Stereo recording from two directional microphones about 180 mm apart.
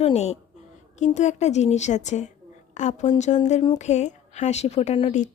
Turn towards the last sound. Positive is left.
turn(degrees=35)  # may be behind; listen again after turning